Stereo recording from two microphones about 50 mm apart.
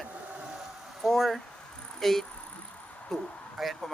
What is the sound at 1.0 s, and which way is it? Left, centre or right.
Speech, centre.